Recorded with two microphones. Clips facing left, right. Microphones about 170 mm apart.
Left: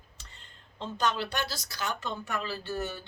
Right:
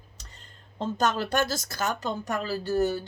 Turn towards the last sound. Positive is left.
turn(degrees=-40)  # may be behind; listen again after turning